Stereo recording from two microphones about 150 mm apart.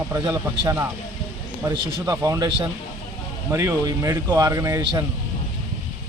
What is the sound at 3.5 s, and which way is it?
Speech, 20° right (ahead or behind).